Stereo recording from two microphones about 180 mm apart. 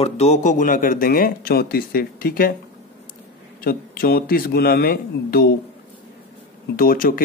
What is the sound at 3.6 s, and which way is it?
Speech, 55° left (ahead or behind).